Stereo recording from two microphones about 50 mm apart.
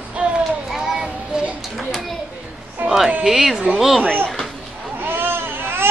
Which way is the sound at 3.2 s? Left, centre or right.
Centre.